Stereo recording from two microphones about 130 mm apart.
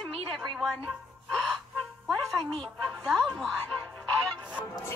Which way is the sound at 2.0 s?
Centre (ahead or behind).